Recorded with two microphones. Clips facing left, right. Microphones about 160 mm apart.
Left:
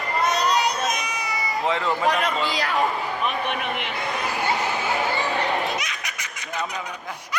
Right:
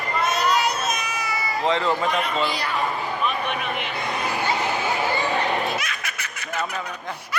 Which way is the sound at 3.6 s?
65° left (ahead or behind).